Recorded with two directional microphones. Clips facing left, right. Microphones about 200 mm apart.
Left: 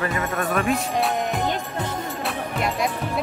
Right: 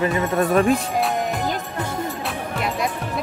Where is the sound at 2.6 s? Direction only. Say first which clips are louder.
Even; centre (ahead or behind).